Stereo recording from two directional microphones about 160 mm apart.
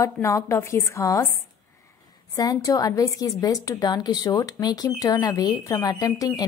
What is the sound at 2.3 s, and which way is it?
A woman's voice, 25° left (ahead or behind).